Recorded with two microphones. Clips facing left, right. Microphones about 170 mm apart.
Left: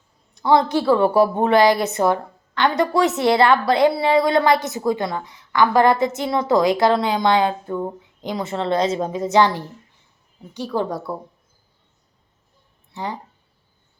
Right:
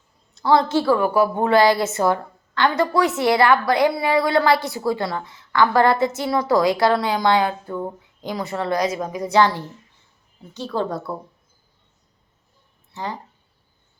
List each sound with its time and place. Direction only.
0.3 s a woman's voice: 20° left (ahead or behind)
1.4 s a woman's voice: 20° left (ahead or behind)
12.9 s speech: 15° left (ahead or behind)